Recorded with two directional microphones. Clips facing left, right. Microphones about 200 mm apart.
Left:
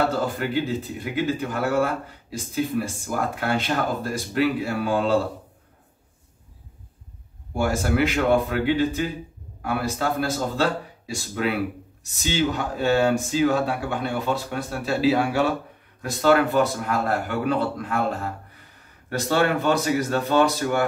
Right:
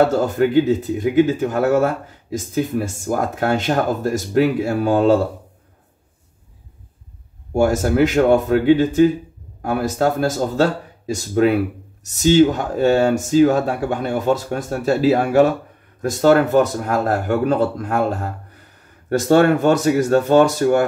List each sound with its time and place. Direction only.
0.1 s a man's voice: 45° right (ahead or behind)
7.5 s a man's voice: 45° right (ahead or behind)